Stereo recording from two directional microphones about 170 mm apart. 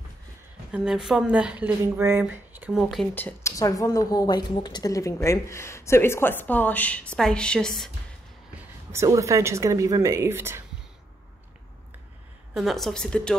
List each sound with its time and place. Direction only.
0.7 s speech: 5° right (ahead or behind)
3.2 s a woman's voice: 15° left (ahead or behind)
8.9 s speech: 20° right (ahead or behind)
12.5 s a woman's voice: centre (ahead or behind)